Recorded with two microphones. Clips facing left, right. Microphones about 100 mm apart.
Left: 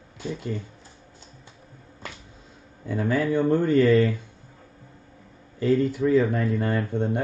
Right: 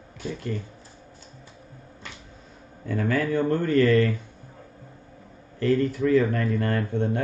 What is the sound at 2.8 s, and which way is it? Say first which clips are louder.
Speech: left 1 dB; 15° left (ahead or behind).